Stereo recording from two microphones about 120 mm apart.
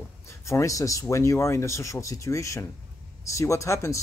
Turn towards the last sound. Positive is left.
turn(degrees=25)  # may be behind; listen again after turning